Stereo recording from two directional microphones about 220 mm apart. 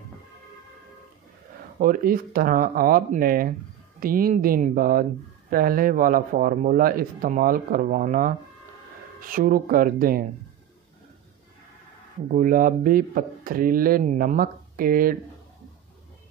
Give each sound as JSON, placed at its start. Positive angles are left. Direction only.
{"t": 1.8, "sound": "speech", "side_deg": -40}
{"t": 12.4, "sound": "speech", "side_deg": -40}